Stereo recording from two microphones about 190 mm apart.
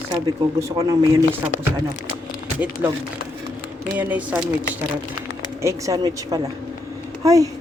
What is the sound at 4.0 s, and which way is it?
Speech, 10° right (ahead or behind).